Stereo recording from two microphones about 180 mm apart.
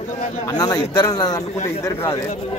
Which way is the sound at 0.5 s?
20° left (ahead or behind).